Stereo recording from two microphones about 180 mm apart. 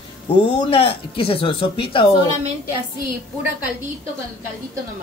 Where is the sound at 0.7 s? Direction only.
30° left (ahead or behind).